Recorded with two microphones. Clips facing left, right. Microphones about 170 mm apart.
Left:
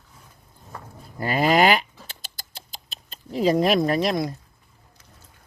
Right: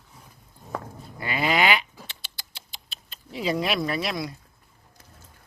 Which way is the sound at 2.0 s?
45° left (ahead or behind).